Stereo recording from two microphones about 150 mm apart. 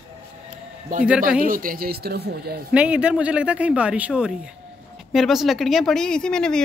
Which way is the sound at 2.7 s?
10° right (ahead or behind).